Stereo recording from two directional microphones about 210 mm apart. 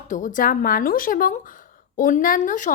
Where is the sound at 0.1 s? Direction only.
40° left (ahead or behind).